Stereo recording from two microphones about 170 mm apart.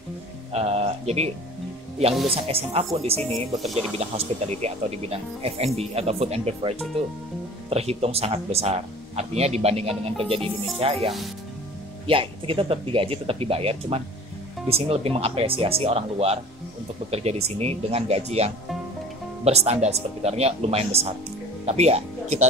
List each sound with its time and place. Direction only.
0.5 s speech: 40° right (ahead or behind)
3.2 s speech: 10° left (ahead or behind)
3.5 s speech: centre (ahead or behind)
3.9 s speech: 35° right (ahead or behind)
7.7 s speech: 35° right (ahead or behind)
12.1 s speech: 30° right (ahead or behind)